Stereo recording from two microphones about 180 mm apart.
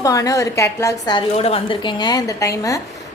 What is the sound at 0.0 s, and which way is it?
A woman's voice, 20° left (ahead or behind).